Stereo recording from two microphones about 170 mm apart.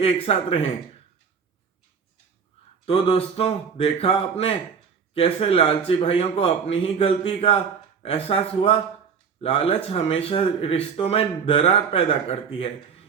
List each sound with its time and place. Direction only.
0.0 s speech: 35° left (ahead or behind)
2.8 s speech: 35° left (ahead or behind)